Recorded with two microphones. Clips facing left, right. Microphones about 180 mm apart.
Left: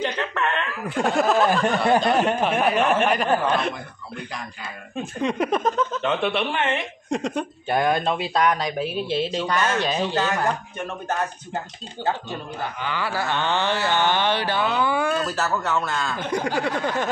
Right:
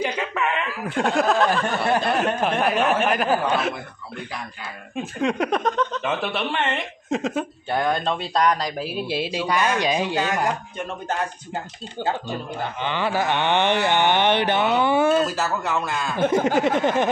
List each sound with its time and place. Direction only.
0.0 s speech: 10° right (ahead or behind)
5.2 s speech: centre (ahead or behind)
7.6 s speech: 15° left (ahead or behind); by 10.5 s 15° right (ahead or behind)
12.8 s a sound: 20° right (ahead or behind)
15.2 s speech: 10° right (ahead or behind)
16.3 s a sound: 20° right (ahead or behind)